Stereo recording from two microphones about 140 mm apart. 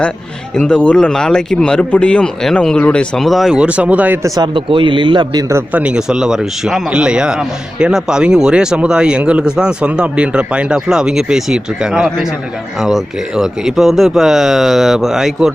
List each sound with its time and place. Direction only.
0.5 s a man's voice: 10° left (ahead or behind); by 4.3 s 15° right (ahead or behind)
4.4 s a man's voice: 35° right (ahead or behind); by 5.8 s 20° right (ahead or behind)
5.8 s a man's voice: 5° right (ahead or behind)